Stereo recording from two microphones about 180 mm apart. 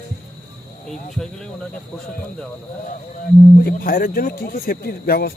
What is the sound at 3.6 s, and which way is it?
Speech, 55° left (ahead or behind).